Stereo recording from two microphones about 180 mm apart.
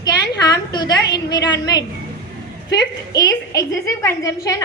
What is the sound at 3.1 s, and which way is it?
A woman's voice, 20° left (ahead or behind).